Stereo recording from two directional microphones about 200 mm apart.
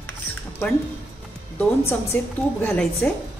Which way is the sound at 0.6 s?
10° left (ahead or behind).